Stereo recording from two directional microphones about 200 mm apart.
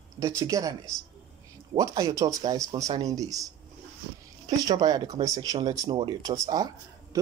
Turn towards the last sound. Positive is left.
turn(degrees=-20)  # may be behind; listen again after turning